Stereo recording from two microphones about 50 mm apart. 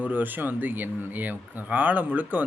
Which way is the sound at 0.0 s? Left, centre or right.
Right.